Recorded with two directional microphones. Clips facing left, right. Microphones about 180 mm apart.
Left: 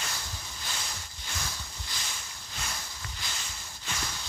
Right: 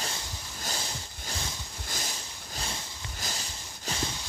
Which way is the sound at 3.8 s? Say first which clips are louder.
Right 5 dB; 30° right (ahead or behind).